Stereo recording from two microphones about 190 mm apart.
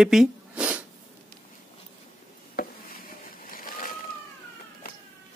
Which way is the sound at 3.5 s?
50° left (ahead or behind).